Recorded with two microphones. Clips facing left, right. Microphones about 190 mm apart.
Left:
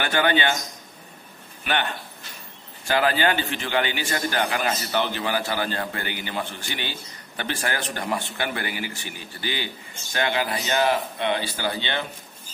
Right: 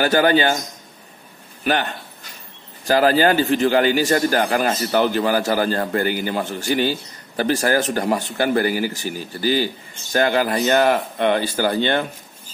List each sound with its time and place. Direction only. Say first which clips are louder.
0.0 s a man's voice: right 6 dB; 40° right (ahead or behind)
1.6 s a man's voice: right 5 dB; 40° right (ahead or behind)